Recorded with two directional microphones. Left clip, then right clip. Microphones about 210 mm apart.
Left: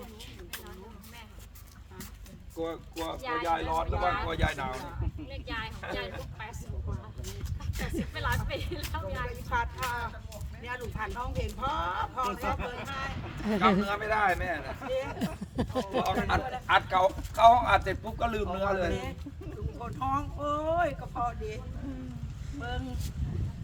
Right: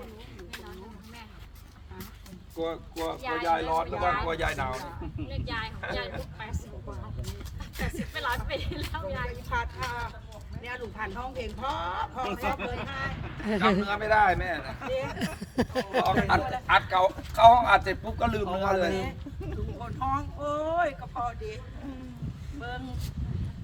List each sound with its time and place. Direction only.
2.6 s speech: 10° right (ahead or behind)
4.4 s speech: 15° right (ahead or behind)
5.3 s speech: 5° right (ahead or behind)
7.8 s speech: 5° right (ahead or behind)
10.9 s speech: 5° right (ahead or behind)
15.2 s a sound: 25° right (ahead or behind)
16.2 s speech: 10° right (ahead or behind)
22.6 s speech: centre (ahead or behind)